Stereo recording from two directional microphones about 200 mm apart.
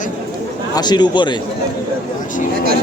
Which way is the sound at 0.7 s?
20° left (ahead or behind).